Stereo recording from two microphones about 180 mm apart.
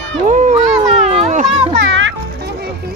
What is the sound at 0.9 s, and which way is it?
Children playing, 35° right (ahead or behind).